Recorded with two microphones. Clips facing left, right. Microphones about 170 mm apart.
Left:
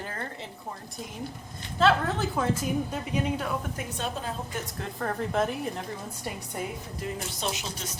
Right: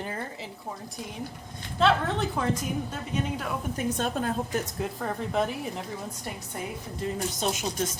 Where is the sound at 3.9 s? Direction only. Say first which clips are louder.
Right 3 dB; 50° right (ahead or behind).